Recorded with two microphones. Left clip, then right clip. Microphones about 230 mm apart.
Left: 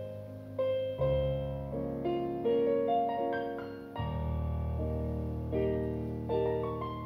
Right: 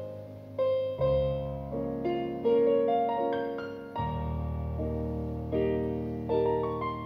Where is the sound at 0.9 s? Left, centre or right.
Right.